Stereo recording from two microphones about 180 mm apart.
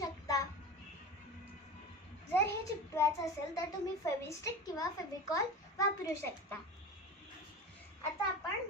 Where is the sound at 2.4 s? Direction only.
15° left (ahead or behind).